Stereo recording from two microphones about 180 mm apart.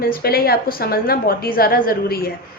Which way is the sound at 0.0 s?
55° left (ahead or behind).